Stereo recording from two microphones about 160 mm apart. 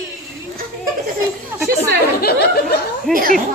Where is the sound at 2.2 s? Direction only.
85° left.